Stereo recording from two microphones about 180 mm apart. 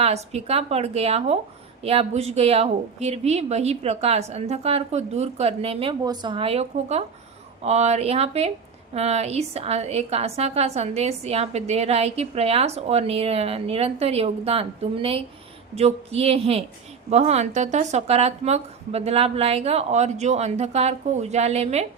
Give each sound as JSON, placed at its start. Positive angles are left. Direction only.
{"t": 0.0, "sound": "a woman's voice", "side_deg": -35}